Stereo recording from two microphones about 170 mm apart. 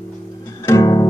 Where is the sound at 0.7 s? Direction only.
20° left (ahead or behind).